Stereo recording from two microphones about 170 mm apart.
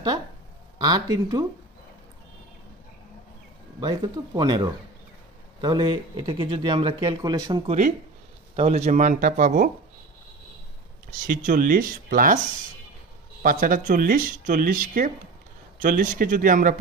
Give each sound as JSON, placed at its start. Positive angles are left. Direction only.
{"t": 0.7, "sound": "speech", "side_deg": -25}
{"t": 4.4, "sound": "speech", "side_deg": -25}
{"t": 8.5, "sound": "speech", "side_deg": -40}
{"t": 11.1, "sound": "speech", "side_deg": -55}
{"t": 13.4, "sound": "speech", "side_deg": -55}